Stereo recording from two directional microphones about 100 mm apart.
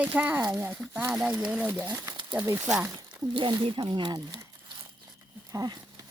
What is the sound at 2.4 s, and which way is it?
Speech, 25° right (ahead or behind).